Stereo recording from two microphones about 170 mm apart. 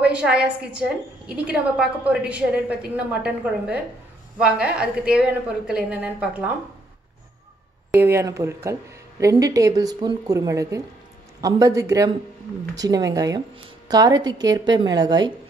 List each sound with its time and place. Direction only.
0.0 s a woman's voice: 5° right (ahead or behind)
7.9 s a woman's voice: 15° right (ahead or behind)